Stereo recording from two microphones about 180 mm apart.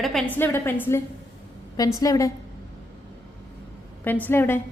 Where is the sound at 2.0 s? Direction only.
20° left (ahead or behind).